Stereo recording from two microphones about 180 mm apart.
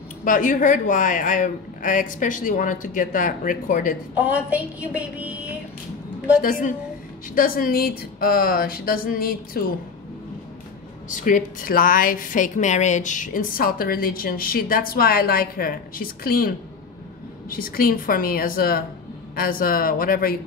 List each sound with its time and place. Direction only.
0.2 s a woman's voice: 45° left (ahead or behind)
4.1 s a sound: 5° right (ahead or behind)
6.4 s a woman's voice: 45° left (ahead or behind)
11.1 s a woman's voice: 45° left (ahead or behind)